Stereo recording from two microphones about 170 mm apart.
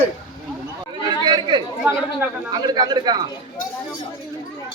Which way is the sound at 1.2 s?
25° right (ahead or behind).